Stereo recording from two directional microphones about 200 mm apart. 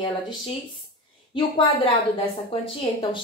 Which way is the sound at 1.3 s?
25° left (ahead or behind).